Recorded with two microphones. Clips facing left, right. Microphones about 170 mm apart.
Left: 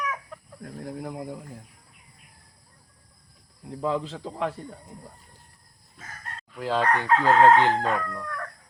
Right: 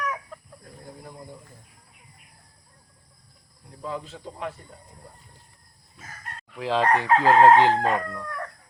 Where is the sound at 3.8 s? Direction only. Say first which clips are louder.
Left 6 dB; 90° left.